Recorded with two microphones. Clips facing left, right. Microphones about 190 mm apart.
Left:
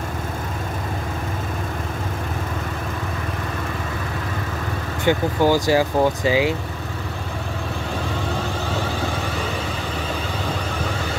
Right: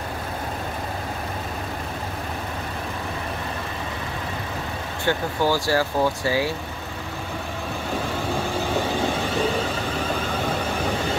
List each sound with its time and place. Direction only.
5.0 s speech: 15° left (ahead or behind)